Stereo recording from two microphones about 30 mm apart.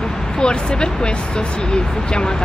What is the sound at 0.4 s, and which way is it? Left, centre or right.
Speech, left.